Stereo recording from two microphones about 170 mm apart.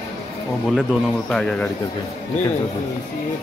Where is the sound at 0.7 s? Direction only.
Centre (ahead or behind).